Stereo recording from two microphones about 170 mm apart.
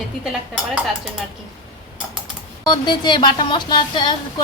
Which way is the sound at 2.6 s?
25° left (ahead or behind).